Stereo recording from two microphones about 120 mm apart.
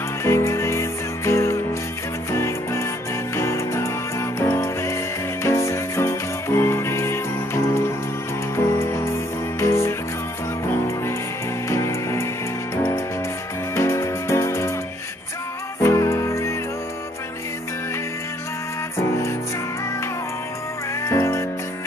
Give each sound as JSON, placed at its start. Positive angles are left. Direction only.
{"t": 0.2, "sound": "music", "side_deg": 20}
{"t": 11.7, "sound": "music", "side_deg": 25}
{"t": 13.7, "sound": "music", "side_deg": 25}
{"t": 15.8, "sound": "music", "side_deg": 20}
{"t": 21.0, "sound": "music", "side_deg": 20}